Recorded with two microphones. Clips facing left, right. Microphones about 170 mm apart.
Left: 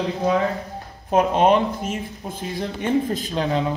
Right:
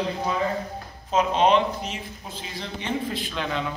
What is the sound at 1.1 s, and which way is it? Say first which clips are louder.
Speech: left 3 dB; 55° left (ahead or behind).